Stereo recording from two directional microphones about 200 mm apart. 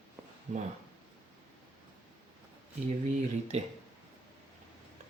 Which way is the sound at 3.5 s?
35° right (ahead or behind).